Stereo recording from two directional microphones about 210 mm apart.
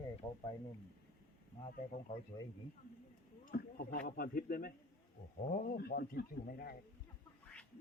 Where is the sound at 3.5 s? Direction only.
45° left (ahead or behind).